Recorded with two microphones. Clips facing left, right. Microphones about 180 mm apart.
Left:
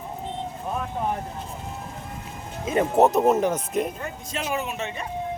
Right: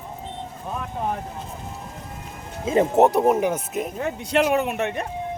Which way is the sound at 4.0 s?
70° right (ahead or behind).